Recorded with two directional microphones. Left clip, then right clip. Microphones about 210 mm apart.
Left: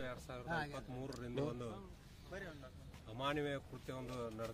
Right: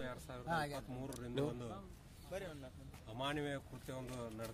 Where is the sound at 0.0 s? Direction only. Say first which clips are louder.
Even; 5° left (ahead or behind).